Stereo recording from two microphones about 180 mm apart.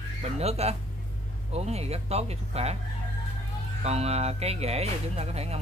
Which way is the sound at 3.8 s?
35° right (ahead or behind).